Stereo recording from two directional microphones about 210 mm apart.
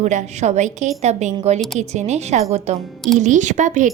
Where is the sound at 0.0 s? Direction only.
35° right (ahead or behind).